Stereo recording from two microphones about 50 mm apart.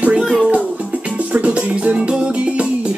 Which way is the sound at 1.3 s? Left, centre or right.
Right.